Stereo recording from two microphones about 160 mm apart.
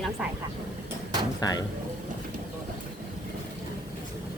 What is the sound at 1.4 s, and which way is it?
Speech, 25° left (ahead or behind).